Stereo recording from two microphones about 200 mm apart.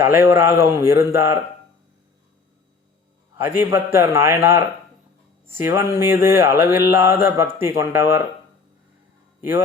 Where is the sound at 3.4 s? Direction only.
10° right (ahead or behind).